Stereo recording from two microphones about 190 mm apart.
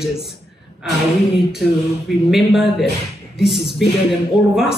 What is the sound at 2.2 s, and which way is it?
A man's voice, centre (ahead or behind).